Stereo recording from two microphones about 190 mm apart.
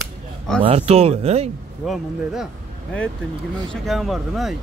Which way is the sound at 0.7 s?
30° right (ahead or behind).